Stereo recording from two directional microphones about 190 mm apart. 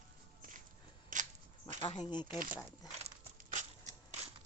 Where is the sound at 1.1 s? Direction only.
45° right (ahead or behind).